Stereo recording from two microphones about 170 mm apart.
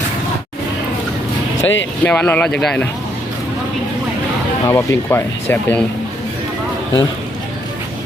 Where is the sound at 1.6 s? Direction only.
90° left.